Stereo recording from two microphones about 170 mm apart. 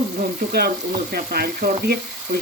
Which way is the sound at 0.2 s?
65° right (ahead or behind).